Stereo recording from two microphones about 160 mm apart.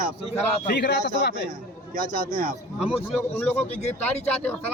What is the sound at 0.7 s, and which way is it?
Speech, 90° left.